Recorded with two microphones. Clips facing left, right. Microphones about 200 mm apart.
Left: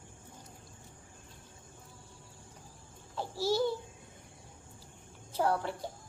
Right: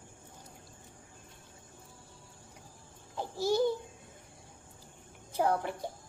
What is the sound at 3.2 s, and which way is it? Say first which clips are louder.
Speech: right 2 dB; 15° right (ahead or behind).